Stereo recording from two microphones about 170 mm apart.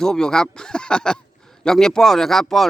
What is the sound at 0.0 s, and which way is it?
Speech, 5° left (ahead or behind).